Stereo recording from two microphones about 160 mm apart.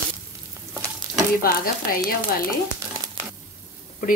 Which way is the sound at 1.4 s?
65° left (ahead or behind).